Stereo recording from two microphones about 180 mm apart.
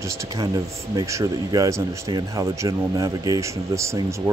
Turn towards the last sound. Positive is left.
turn(degrees=-15)  # may be behind; listen again after turning